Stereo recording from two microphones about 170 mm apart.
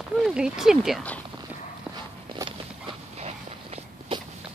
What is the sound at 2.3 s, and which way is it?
Walk, 30° right (ahead or behind).